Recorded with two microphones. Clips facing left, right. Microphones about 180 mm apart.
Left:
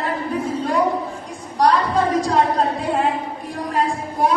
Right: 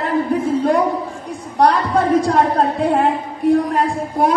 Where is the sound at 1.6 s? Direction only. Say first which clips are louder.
Right 2 dB; 60° right (ahead or behind).